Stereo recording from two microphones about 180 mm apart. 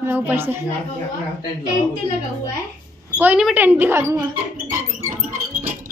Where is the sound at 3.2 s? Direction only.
5° right (ahead or behind).